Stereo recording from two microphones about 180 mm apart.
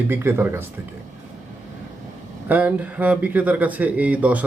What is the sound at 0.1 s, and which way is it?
Speech, 15° right (ahead or behind).